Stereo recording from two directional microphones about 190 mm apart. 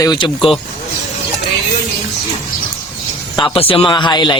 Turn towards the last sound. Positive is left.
turn(degrees=25)  # may be behind; listen again after turning